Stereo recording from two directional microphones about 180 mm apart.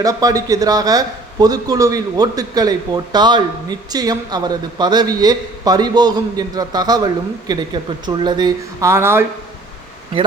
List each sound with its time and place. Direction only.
0.0 s a man's voice: 20° right (ahead or behind)